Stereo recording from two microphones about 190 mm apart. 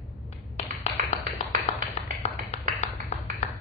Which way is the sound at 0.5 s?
30° left (ahead or behind).